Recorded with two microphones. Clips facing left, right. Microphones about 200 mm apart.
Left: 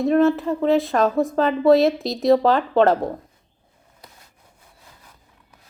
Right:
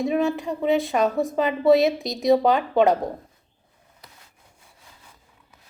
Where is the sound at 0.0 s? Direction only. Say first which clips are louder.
Left 5 dB; centre (ahead or behind).